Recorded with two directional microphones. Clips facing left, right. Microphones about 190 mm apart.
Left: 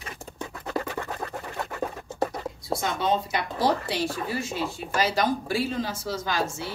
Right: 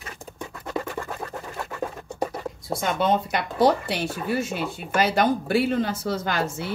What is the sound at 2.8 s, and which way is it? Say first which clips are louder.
Speech: right 4 dB; 60° right (ahead or behind).